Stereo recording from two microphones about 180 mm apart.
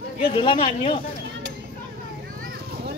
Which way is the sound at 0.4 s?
30° left (ahead or behind).